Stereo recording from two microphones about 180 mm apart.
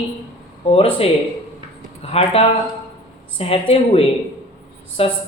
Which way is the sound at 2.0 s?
35° left (ahead or behind).